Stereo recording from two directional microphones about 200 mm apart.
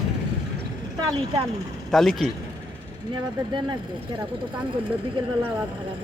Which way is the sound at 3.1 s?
25° right (ahead or behind).